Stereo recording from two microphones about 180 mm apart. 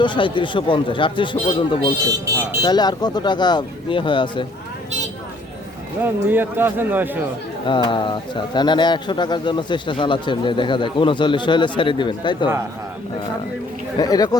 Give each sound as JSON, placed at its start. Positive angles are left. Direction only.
{"t": 0.0, "sound": "speech", "side_deg": 25}
{"t": 2.0, "sound": "speech", "side_deg": -15}
{"t": 2.6, "sound": "speech", "side_deg": 25}
{"t": 6.2, "sound": "speech", "side_deg": -10}
{"t": 7.7, "sound": "speech", "side_deg": 25}
{"t": 14.0, "sound": "speech", "side_deg": 20}